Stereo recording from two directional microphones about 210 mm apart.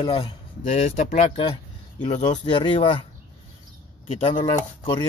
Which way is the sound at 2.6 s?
25° left (ahead or behind).